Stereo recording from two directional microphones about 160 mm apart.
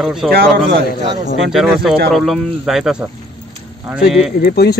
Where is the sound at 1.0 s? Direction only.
45° right (ahead or behind).